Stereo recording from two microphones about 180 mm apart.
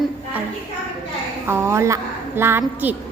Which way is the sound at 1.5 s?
15° right (ahead or behind).